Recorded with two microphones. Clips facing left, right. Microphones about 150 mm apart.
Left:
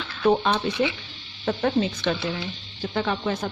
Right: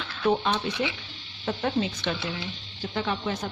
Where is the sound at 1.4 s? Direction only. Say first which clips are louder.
Left 5 dB; 50° left (ahead or behind).